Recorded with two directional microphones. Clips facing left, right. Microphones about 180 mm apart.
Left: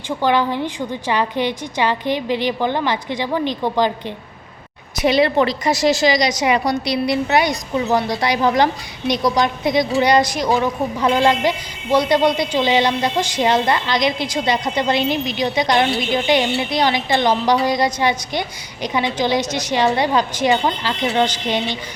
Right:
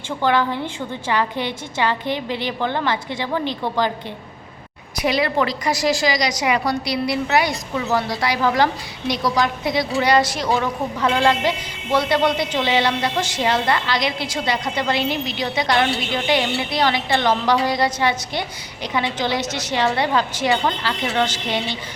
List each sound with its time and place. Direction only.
0.2 s a woman's voice: 15° left (ahead or behind)
4.9 s a woman's voice: 25° left (ahead or behind)